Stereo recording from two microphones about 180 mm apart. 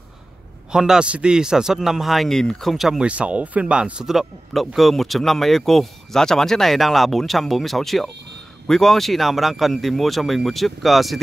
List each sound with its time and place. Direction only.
0.7 s a man's voice: 5° right (ahead or behind)